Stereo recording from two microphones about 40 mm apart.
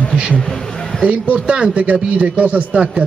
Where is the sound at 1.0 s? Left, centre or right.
Right.